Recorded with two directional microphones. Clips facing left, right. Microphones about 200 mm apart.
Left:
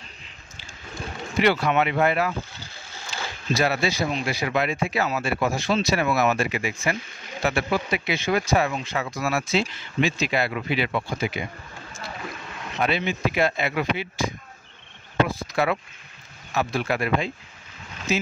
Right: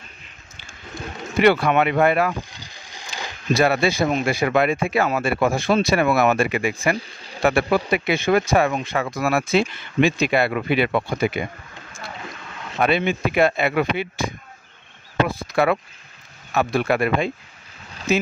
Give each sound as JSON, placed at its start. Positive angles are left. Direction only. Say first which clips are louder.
{"t": 1.4, "sound": "speech", "louder": "right 4 dB", "side_deg": -55}
{"t": 2.5, "sound": "vehicle", "louder": "even", "side_deg": -15}
{"t": 3.5, "sound": "speech", "louder": "right 5 dB", "side_deg": -55}
{"t": 12.7, "sound": "speech", "louder": "right 5 dB", "side_deg": -55}